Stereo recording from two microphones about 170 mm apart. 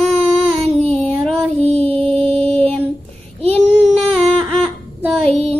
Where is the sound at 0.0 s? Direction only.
Centre (ahead or behind).